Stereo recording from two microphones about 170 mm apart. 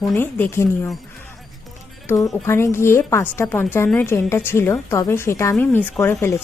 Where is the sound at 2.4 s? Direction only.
15° left (ahead or behind).